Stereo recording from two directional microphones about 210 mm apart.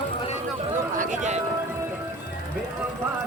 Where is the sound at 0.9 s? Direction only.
35° right (ahead or behind).